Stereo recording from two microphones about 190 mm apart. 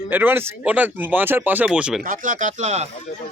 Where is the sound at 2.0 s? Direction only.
45° right (ahead or behind).